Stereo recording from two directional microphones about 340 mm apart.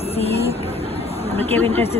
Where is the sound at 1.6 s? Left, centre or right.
Centre.